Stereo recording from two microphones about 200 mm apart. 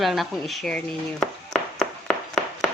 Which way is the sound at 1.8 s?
5° left (ahead or behind).